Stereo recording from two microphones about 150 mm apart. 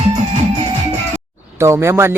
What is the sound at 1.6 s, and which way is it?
Speech, 20° right (ahead or behind).